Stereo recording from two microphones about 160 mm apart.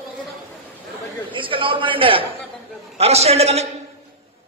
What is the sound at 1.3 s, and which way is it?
A man's voice, 35° right (ahead or behind).